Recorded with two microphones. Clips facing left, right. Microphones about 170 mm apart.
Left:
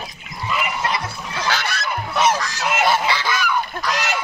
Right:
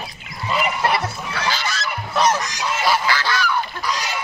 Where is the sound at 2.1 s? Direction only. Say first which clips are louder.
Even; 5° left (ahead or behind).